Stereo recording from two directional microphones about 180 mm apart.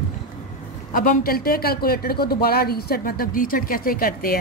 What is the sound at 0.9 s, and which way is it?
A woman's voice, 50° left (ahead or behind).